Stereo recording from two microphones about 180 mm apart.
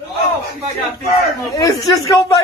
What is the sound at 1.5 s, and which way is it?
Speech, 20° left (ahead or behind).